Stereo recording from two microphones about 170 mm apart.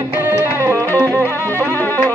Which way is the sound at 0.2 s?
15° right (ahead or behind).